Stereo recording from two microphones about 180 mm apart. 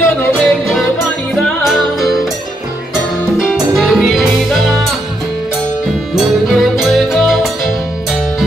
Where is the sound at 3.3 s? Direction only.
Centre (ahead or behind).